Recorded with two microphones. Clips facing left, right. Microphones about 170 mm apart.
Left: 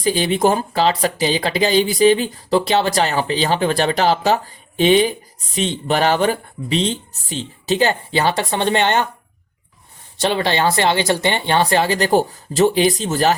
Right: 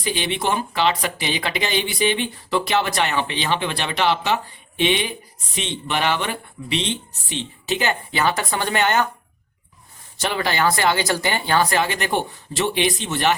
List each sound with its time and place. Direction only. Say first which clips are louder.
0.0 s speech: left 7 dB; 40° left (ahead or behind)
10.2 s speech: left 4 dB; 30° left (ahead or behind)